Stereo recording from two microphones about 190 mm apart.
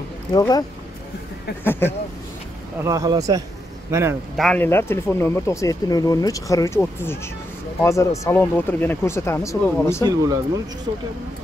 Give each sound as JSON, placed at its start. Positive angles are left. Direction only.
{"t": 0.3, "sound": "speech", "side_deg": 20}
{"t": 2.8, "sound": "speech", "side_deg": -20}
{"t": 4.4, "sound": "speech", "side_deg": 5}
{"t": 10.0, "sound": "speech", "side_deg": -20}